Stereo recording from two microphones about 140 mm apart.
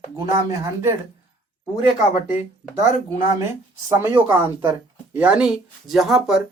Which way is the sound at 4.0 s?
15° right (ahead or behind).